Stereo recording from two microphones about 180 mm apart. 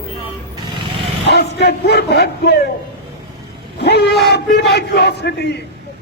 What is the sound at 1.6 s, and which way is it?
Music, 70° left (ahead or behind).